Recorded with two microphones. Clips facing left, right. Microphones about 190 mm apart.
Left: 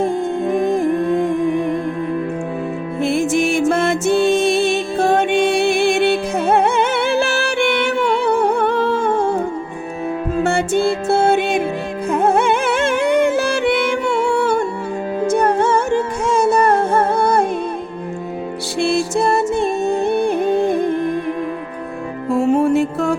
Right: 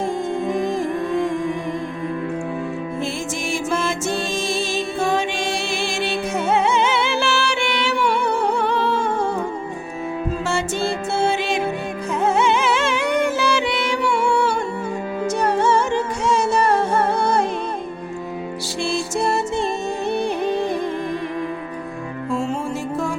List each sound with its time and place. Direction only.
0.0 s music: 55° left (ahead or behind)
3.0 s music: 60° left (ahead or behind)
10.4 s music: 60° left (ahead or behind)
18.8 s music: 60° left (ahead or behind)
22.3 s music: 60° left (ahead or behind)